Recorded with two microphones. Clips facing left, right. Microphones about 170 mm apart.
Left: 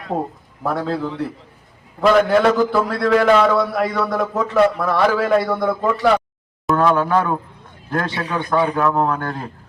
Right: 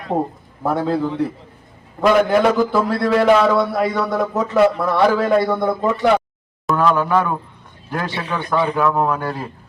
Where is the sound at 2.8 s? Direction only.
20° right (ahead or behind).